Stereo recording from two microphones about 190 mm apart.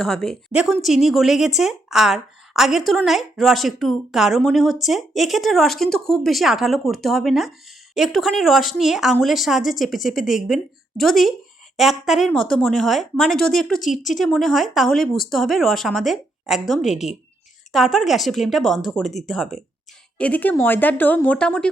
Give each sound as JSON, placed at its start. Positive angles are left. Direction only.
{"t": 0.0, "sound": "a woman's voice", "side_deg": 0}